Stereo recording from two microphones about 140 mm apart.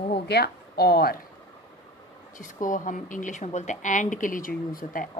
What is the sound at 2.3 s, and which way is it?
A woman's voice, 70° left (ahead or behind).